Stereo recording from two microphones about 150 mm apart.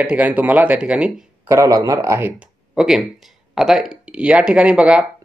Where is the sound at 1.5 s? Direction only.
25° right (ahead or behind).